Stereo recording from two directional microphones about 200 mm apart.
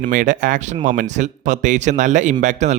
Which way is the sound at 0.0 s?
40° right (ahead or behind).